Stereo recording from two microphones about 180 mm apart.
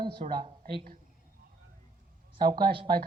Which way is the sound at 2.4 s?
55° right (ahead or behind).